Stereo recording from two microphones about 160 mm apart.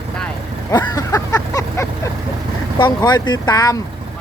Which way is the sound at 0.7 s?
20° left (ahead or behind).